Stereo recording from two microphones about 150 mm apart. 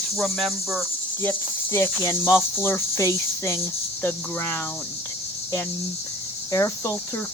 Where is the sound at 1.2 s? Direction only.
15° left (ahead or behind).